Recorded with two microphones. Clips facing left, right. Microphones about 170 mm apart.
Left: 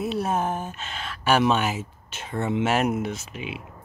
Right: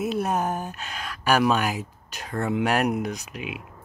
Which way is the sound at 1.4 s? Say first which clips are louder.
Even; centre (ahead or behind).